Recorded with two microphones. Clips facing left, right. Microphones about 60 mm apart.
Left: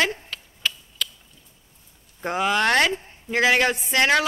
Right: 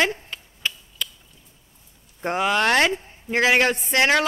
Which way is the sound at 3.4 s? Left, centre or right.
Centre.